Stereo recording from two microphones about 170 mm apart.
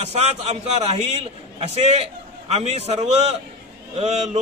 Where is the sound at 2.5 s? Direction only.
40° right (ahead or behind).